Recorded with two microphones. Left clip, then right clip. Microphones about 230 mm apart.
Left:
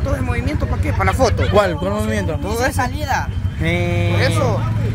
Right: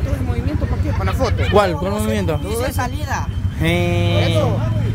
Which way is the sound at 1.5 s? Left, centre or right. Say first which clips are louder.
Even; centre.